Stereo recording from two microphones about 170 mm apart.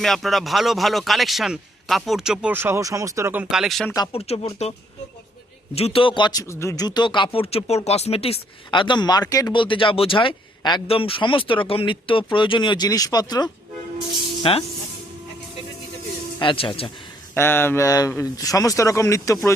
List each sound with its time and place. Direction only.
0.0 s a man's voice: centre (ahead or behind); by 3.4 s 15° right (ahead or behind)
3.5 s a man's voice: centre (ahead or behind)
3.9 s speech: 30° left (ahead or behind)
5.7 s speech: 35° left (ahead or behind)
6.5 s speech: 15° left (ahead or behind); by 14.6 s 30° left (ahead or behind)
16.4 s speech: 30° left (ahead or behind)
17.3 s speech: 15° left (ahead or behind)